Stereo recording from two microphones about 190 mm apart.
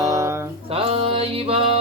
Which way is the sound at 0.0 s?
15° right (ahead or behind).